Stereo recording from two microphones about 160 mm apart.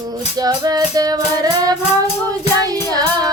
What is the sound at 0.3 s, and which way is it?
Music, 25° right (ahead or behind).